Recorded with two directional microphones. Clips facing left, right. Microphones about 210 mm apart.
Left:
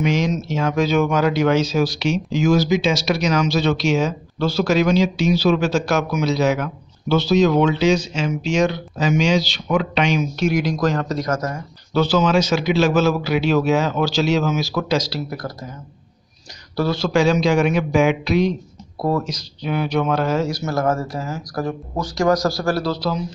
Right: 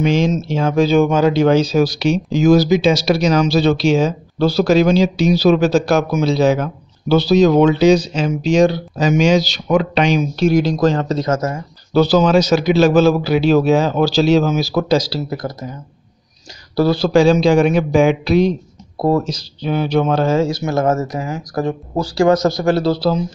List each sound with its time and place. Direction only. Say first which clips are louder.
0.0 s speech: right 4 dB; 30° right (ahead or behind)
11.9 s speech: right 5 dB; 35° right (ahead or behind); by 15.5 s 20° right (ahead or behind)
16.7 s speech: right 6 dB; 35° right (ahead or behind)